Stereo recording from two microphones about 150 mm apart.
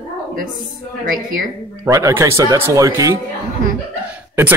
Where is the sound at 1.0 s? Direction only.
70° right (ahead or behind).